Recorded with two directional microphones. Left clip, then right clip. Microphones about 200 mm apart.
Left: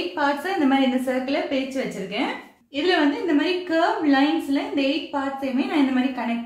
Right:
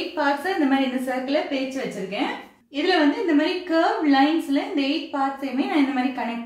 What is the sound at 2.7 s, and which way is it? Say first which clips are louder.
A woman's voice: even; 20° left (ahead or behind).